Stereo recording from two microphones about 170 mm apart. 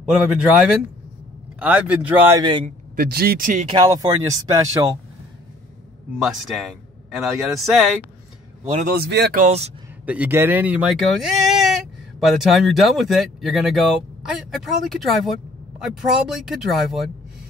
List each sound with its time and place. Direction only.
1.6 s a man's voice: 10° right (ahead or behind)
2.3 s speech: 25° right (ahead or behind)
3.0 s speech: 60° right (ahead or behind)
3.6 s speech: 25° right (ahead or behind)
6.2 s speech: centre (ahead or behind)
8.7 s speech: 65° right (ahead or behind)
9.4 s speech: 40° right (ahead or behind)
10.0 s speech: 10° right (ahead or behind)